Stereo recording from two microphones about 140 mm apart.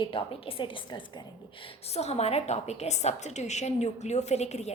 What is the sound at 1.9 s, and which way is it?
A woman's voice, 50° left (ahead or behind).